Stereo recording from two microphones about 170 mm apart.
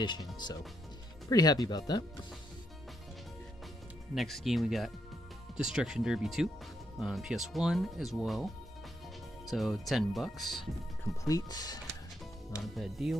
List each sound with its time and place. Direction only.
0.0 s speech: 25° left (ahead or behind)
4.1 s speech: centre (ahead or behind)
9.5 s speech: centre (ahead or behind)
11.2 s speech: 20° left (ahead or behind)
12.7 s speech: centre (ahead or behind)